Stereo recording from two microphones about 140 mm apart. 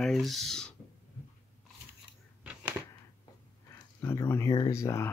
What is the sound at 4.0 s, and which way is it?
Speech, 15° left (ahead or behind).